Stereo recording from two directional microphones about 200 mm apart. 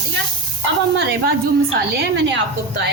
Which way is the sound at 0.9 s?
55° right (ahead or behind).